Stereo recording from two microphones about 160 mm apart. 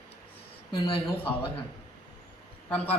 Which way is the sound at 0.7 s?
35° left (ahead or behind).